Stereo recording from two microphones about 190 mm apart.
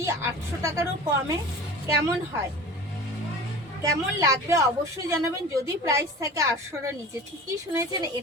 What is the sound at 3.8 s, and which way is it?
Speech, 15° right (ahead or behind).